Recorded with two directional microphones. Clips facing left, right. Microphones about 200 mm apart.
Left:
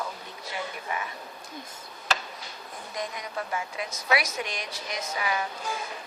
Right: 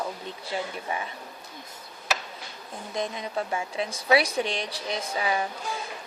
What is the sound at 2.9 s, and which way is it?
A woman's voice, 25° right (ahead or behind).